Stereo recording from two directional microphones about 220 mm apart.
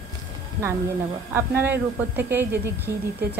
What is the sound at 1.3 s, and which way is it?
A woman's voice, 10° right (ahead or behind).